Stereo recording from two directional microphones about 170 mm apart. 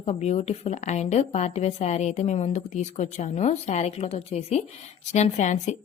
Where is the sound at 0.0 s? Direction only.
40° left (ahead or behind).